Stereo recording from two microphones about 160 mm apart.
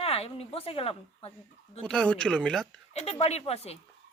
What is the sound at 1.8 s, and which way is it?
Speech, 5° left (ahead or behind).